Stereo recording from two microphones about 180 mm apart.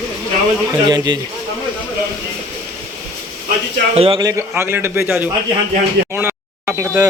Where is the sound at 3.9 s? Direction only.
30° right (ahead or behind).